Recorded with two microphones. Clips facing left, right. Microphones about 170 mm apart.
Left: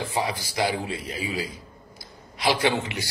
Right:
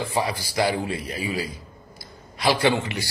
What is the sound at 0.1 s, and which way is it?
A man's voice, 20° left (ahead or behind).